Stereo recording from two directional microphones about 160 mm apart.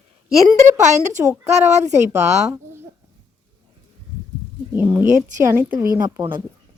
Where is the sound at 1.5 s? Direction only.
45° right (ahead or behind).